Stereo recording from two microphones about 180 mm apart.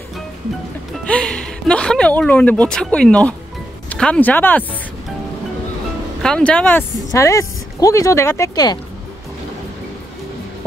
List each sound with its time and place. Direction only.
1.0 s speech: 5° left (ahead or behind)
6.2 s speech: 5° left (ahead or behind)